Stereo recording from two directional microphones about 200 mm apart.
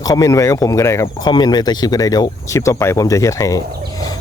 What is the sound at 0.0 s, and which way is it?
Speech, 20° left (ahead or behind).